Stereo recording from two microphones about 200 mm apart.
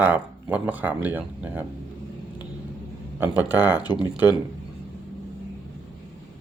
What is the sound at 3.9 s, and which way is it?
Speech, 20° left (ahead or behind).